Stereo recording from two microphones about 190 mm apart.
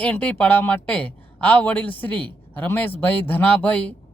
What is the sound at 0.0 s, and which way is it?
Speech, 5° left (ahead or behind).